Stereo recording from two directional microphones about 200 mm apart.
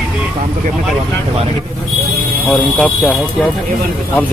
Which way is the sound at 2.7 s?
5° left (ahead or behind).